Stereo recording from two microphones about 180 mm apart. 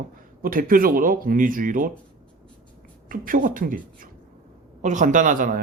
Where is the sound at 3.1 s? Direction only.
50° right (ahead or behind).